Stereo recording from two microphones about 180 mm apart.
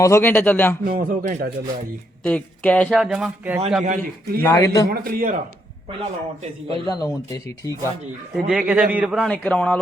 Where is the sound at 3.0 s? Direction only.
5° right (ahead or behind).